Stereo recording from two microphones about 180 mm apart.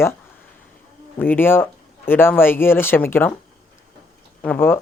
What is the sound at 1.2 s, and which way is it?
Speech, 10° left (ahead or behind).